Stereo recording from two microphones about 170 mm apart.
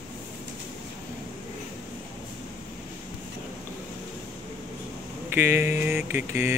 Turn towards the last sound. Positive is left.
turn(degrees=-15)  # may be behind; listen again after turning